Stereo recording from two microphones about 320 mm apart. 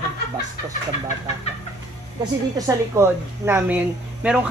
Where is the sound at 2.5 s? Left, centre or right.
Centre.